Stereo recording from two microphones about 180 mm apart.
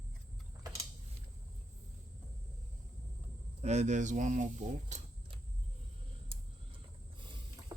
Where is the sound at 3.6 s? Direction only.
40° right (ahead or behind).